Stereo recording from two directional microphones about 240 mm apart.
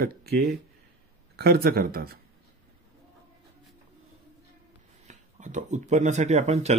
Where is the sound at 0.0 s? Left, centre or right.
Right.